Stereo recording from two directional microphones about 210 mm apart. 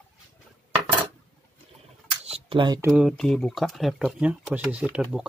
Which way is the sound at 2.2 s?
25° right (ahead or behind).